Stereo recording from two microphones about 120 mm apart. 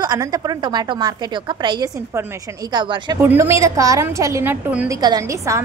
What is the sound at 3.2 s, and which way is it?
A woman's voice, 20° right (ahead or behind).